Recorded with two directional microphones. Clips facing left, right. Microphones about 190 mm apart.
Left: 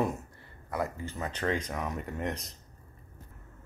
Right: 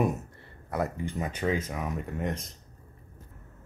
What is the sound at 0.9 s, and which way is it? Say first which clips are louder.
Speech: right 4 dB; 15° right (ahead or behind).